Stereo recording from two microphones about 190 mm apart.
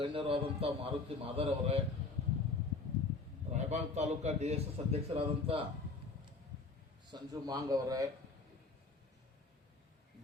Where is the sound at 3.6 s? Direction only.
35° right (ahead or behind).